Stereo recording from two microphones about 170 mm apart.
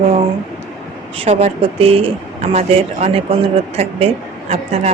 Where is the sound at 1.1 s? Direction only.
35° right (ahead or behind).